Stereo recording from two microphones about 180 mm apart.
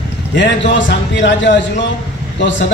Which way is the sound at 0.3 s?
85° left.